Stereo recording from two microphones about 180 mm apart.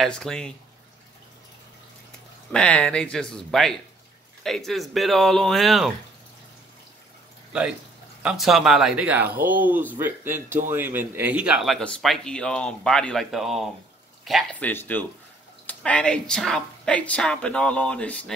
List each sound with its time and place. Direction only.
0.0 s a man's voice: 5° left (ahead or behind)
2.5 s a man's voice: 5° left (ahead or behind)
8.2 s a man's voice: 5° right (ahead or behind)